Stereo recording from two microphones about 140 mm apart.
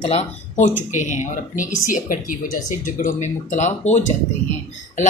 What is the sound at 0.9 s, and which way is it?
Speech, 60° left (ahead or behind).